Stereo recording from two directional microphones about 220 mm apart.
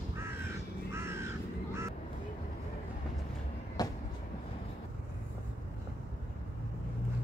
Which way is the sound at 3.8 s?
15° left (ahead or behind).